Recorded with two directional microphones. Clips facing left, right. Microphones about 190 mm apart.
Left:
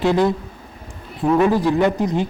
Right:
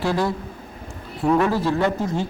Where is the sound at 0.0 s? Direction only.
20° left (ahead or behind).